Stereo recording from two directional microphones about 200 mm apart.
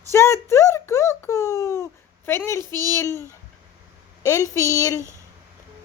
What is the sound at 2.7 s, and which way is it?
Speech, 20° right (ahead or behind).